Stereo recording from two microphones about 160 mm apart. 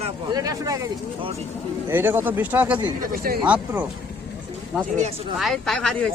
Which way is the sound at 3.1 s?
70° right (ahead or behind).